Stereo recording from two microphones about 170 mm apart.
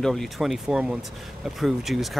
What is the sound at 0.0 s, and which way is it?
Speech, centre (ahead or behind).